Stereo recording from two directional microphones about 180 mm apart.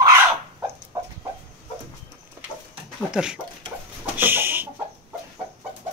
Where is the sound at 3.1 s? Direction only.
5° right (ahead or behind).